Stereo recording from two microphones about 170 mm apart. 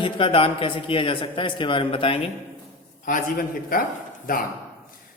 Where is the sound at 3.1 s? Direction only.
55° left (ahead or behind).